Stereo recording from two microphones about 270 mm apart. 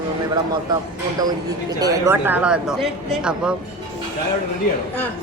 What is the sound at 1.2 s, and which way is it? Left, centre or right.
A woman's voice, centre.